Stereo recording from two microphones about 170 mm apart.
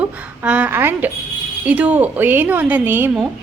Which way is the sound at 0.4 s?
10° right (ahead or behind).